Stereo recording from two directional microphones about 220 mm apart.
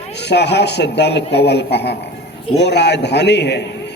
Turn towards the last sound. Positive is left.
turn(degrees=50)  # may be behind; listen again after turning